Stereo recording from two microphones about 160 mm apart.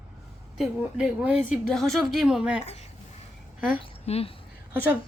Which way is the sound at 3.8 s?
40° left (ahead or behind).